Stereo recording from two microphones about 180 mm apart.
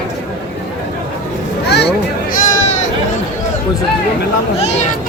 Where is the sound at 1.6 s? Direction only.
70° left (ahead or behind).